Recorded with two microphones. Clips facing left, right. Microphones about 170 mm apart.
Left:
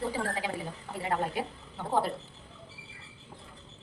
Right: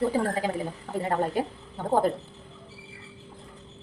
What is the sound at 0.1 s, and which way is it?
A woman's voice, 45° right (ahead or behind).